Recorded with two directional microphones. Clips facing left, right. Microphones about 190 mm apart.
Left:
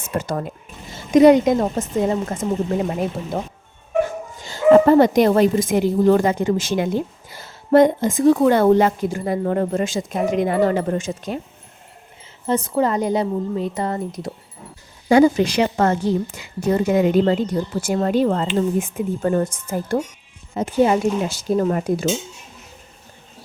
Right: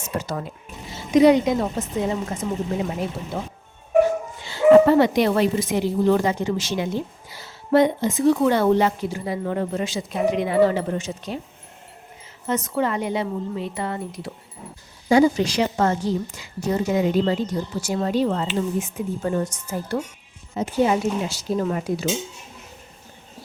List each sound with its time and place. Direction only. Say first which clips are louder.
0.2 s a woman's voice: left 6 dB; 50° left (ahead or behind)
4.4 s a woman's voice: even; 45° left (ahead or behind)
12.5 s speech: left 4 dB; 30° left (ahead or behind)
15.1 s a woman's voice: left 3 dB; 55° left (ahead or behind)